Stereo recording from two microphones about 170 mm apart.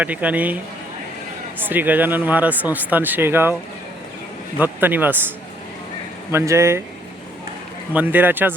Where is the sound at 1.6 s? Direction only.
10° right (ahead or behind).